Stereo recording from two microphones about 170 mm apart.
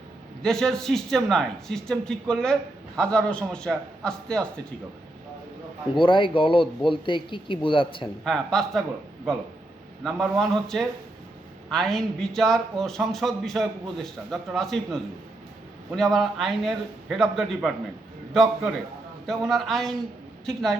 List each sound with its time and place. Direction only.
0.4 s a man's voice: 5° left (ahead or behind)
5.9 s speech: 30° left (ahead or behind)
8.2 s a man's voice: centre (ahead or behind)
10.0 s a man's voice: centre (ahead or behind)